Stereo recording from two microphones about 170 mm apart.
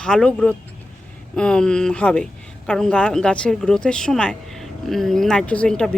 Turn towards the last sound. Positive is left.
turn(degrees=5)  # may be behind; listen again after turning